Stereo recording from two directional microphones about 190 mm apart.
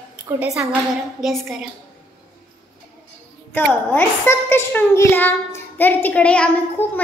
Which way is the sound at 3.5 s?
10° left (ahead or behind).